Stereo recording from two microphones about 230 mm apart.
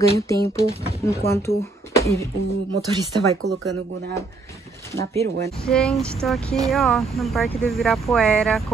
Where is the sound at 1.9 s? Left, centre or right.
Centre.